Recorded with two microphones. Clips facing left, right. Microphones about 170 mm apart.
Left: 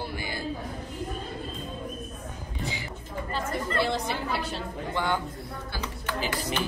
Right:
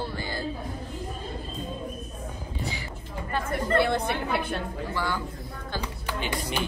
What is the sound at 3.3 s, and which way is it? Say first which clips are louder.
Chatter: right 4 dB; 55° right (ahead or behind).